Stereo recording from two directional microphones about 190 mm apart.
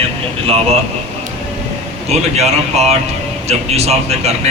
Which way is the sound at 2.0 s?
35° right (ahead or behind).